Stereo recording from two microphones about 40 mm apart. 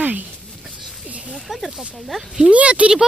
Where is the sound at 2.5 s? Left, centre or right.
Right.